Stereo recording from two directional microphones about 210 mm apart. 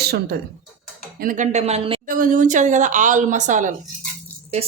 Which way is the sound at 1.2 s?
40° right (ahead or behind).